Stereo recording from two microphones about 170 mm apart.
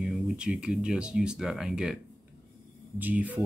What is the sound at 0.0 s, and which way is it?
Speech, 5° right (ahead or behind).